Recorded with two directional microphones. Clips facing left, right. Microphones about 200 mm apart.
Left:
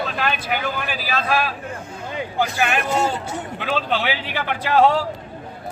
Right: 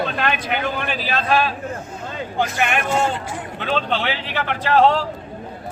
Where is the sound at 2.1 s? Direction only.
15° left (ahead or behind).